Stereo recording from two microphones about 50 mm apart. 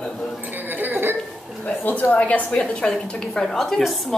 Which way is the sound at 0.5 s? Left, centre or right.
Right.